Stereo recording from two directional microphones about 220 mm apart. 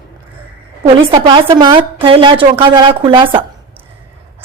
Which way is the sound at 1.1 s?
20° right (ahead or behind).